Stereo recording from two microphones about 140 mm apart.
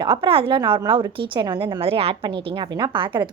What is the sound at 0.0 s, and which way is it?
A woman's voice, 35° right (ahead or behind).